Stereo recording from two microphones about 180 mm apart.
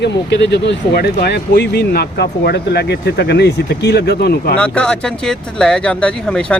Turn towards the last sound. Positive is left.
turn(degrees=5)  # may be behind; listen again after turning